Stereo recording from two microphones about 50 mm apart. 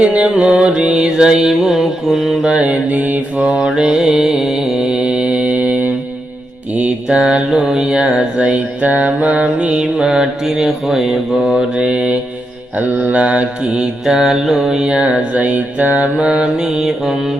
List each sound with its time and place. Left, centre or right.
0.0 s mantra: right; by 2.5 s centre
2.5 s mantra: right
3.7 s mantra: centre; by 5.9 s right
7.1 s mantra: centre
10.1 s mantra: centre
11.8 s mantra: right
14.0 s mantra: centre
14.8 s mantra: centre
16.2 s mantra: right